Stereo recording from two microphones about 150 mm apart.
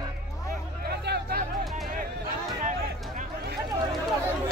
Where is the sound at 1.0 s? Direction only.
90° right.